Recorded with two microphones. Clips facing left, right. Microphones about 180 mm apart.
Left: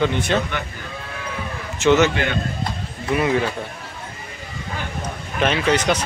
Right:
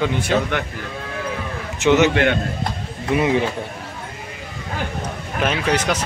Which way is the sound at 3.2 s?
20° right (ahead or behind).